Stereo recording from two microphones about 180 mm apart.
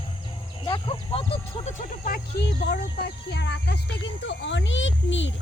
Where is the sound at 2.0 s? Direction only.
60° left (ahead or behind).